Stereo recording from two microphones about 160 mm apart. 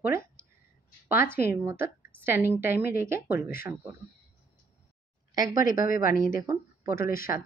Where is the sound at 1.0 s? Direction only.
15° right (ahead or behind).